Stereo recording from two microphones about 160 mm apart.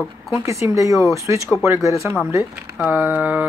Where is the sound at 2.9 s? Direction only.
10° right (ahead or behind).